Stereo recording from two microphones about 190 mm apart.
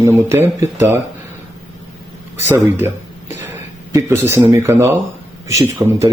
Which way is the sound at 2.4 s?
10° right (ahead or behind).